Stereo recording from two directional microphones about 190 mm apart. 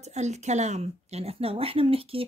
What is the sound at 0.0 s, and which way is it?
Speech, 35° right (ahead or behind).